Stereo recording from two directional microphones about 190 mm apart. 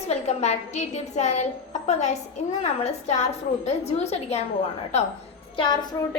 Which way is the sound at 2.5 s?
35° left (ahead or behind).